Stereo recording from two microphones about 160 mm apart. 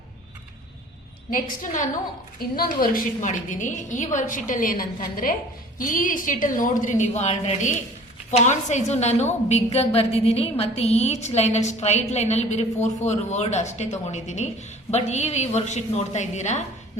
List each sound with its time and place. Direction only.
1.3 s a woman's voice: 55° left (ahead or behind)